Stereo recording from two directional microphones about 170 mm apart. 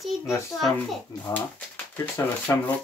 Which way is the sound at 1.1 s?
20° left (ahead or behind).